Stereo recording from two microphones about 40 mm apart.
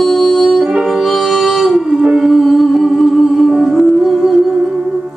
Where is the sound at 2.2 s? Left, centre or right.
Centre.